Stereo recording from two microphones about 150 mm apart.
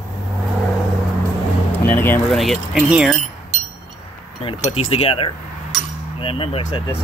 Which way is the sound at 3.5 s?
45° right (ahead or behind).